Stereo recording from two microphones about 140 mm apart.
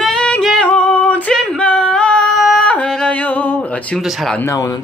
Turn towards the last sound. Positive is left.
turn(degrees=25)  # may be behind; listen again after turning